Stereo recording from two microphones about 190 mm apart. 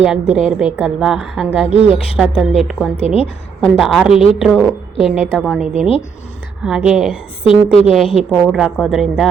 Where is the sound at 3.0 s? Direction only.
30° left (ahead or behind).